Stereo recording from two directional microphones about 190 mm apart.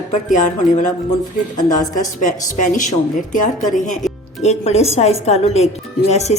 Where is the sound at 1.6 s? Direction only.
40° left (ahead or behind).